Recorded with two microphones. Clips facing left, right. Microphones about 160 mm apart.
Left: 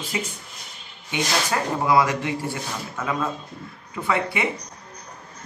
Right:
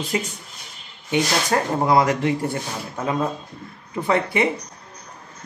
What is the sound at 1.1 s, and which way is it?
Speech, 40° right (ahead or behind).